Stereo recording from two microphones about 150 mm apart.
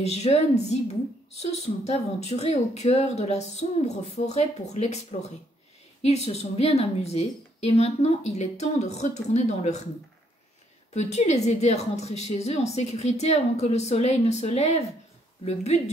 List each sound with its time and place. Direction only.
0.0 s a woman's voice: 45° left (ahead or behind)
6.0 s a woman's voice: 45° left (ahead or behind)
10.9 s a woman's voice: 50° left (ahead or behind)